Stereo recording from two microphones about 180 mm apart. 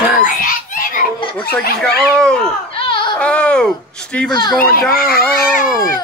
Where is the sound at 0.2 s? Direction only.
50° left (ahead or behind).